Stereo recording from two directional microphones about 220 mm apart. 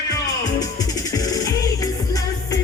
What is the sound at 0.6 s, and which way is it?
Music, 15° left (ahead or behind).